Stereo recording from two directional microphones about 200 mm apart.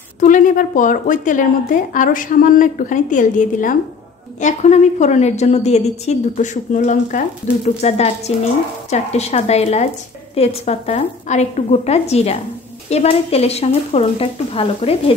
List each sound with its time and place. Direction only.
0.2 s a woman's voice: 40° left (ahead or behind)